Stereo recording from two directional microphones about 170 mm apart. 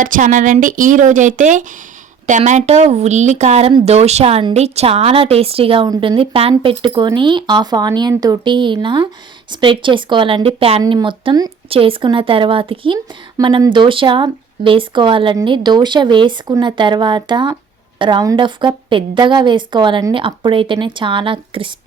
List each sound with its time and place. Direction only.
0.0 s a woman's voice: 50° right (ahead or behind); by 21.7 s 30° right (ahead or behind)